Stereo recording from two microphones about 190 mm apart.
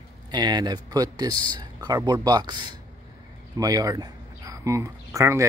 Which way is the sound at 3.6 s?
20° right (ahead or behind).